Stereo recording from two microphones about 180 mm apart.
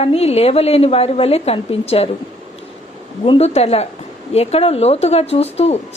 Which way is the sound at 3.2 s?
35° left (ahead or behind).